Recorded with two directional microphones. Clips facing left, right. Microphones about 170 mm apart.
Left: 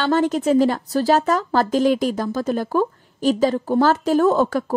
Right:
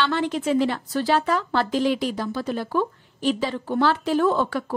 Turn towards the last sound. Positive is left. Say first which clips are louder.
# left 4 dB
turn(degrees=45)  # may be behind; listen again after turning